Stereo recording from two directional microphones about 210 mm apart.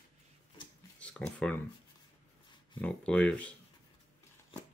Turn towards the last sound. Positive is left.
turn(degrees=5)  # may be behind; listen again after turning